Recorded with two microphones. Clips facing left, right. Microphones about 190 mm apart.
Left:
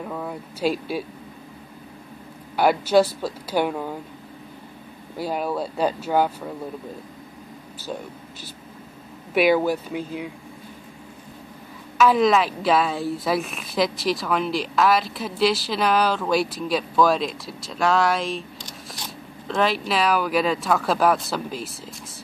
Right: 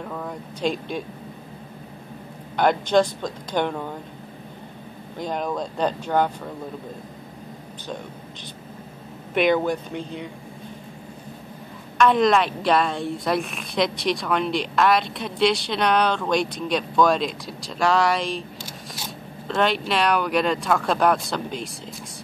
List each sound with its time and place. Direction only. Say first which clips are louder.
0.0 s speech: left 1 dB; 5° left (ahead or behind)
2.5 s speech: left 1 dB; 5° left (ahead or behind)
5.1 s speech: left 1 dB; 5° left (ahead or behind)
9.3 s a woman's voice: left 1 dB; 5° left (ahead or behind)
12.0 s a woman's voice: even; 5° left (ahead or behind)